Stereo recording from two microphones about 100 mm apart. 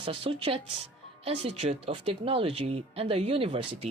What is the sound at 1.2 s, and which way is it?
Speech, 85° right.